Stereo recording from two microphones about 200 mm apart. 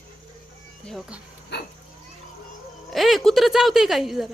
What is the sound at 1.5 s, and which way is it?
Children playing, 60° left (ahead or behind).